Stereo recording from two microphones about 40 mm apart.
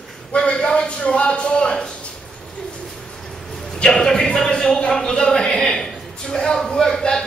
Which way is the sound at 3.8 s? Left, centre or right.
Centre.